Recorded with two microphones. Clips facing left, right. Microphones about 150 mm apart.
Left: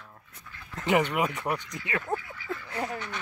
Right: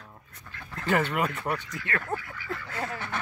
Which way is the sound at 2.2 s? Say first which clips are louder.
Even; 65° right (ahead or behind).